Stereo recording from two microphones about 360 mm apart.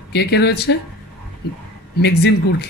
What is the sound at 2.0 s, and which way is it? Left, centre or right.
Speech, left.